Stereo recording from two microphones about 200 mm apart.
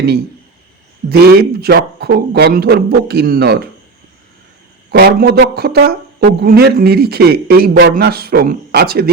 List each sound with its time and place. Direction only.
1.1 s speech: 50° right (ahead or behind)
4.9 s speech: 55° right (ahead or behind)